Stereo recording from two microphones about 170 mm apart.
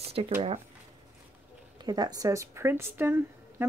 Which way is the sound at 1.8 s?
25° right (ahead or behind).